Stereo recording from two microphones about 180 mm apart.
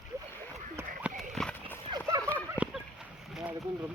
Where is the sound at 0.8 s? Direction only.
15° right (ahead or behind).